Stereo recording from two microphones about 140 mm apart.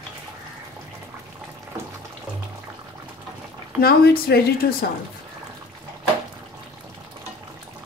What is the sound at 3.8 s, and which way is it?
A woman's voice, 90° left.